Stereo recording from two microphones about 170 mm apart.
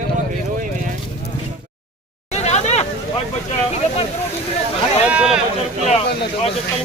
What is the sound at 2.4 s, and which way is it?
Vehicle, 40° left (ahead or behind).